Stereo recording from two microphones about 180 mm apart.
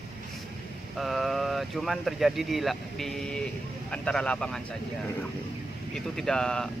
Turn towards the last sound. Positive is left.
turn(degrees=5)  # may be behind; listen again after turning